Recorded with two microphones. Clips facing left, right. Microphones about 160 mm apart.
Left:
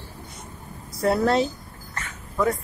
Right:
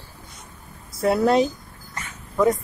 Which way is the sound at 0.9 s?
Centre (ahead or behind).